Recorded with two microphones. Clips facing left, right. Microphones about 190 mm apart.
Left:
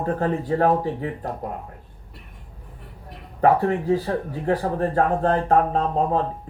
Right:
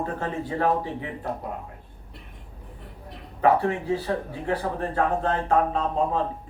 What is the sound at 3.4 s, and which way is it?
Speech, 40° left (ahead or behind).